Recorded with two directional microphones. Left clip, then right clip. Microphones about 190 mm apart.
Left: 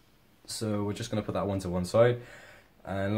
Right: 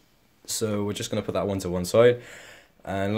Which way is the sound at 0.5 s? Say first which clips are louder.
Right 5 dB; 40° right (ahead or behind).